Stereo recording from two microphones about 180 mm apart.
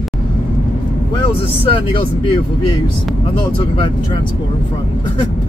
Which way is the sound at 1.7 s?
30° left (ahead or behind).